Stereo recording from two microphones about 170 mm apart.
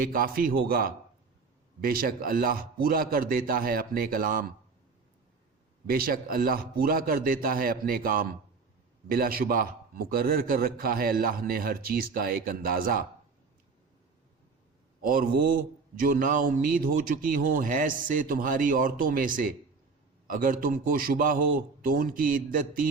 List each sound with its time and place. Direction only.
0.0 s a man's voice: 55° right (ahead or behind)
5.8 s a man's voice: 60° right (ahead or behind)
15.0 s a man's voice: 55° right (ahead or behind)